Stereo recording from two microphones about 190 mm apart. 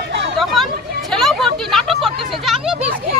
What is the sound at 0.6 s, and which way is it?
Chatter, centre (ahead or behind).